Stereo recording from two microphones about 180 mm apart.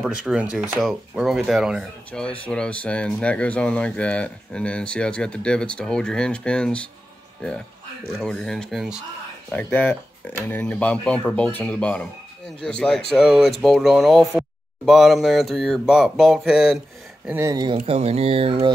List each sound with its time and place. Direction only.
0.0 s speech: 5° right (ahead or behind)
8.1 s speech: 5° left (ahead or behind)
9.5 s speech: 10° left (ahead or behind)
17.3 s speech: 15° right (ahead or behind)
17.8 s speech: 35° right (ahead or behind)